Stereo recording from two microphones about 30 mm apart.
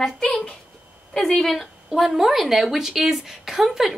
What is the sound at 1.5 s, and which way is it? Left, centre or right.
Speech, centre.